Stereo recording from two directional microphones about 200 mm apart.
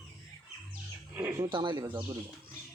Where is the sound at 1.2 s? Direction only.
15° right (ahead or behind).